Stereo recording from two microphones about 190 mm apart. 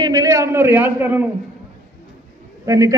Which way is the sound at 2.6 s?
15° right (ahead or behind).